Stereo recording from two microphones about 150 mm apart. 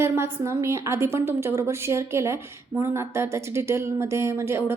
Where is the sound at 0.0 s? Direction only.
15° right (ahead or behind).